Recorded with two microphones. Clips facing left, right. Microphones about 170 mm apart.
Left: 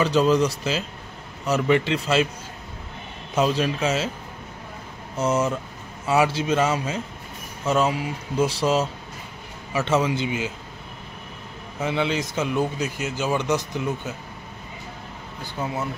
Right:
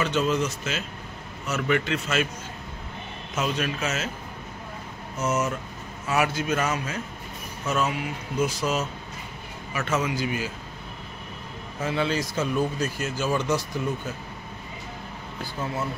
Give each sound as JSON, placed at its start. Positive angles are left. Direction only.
{"t": 0.0, "sound": "a man's voice", "side_deg": 35}
{"t": 3.3, "sound": "speech", "side_deg": 30}
{"t": 5.1, "sound": "a man's voice", "side_deg": 30}
{"t": 11.8, "sound": "a man's voice", "side_deg": 20}